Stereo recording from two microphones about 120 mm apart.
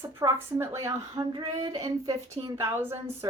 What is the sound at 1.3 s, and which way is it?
Speech, 40° right (ahead or behind).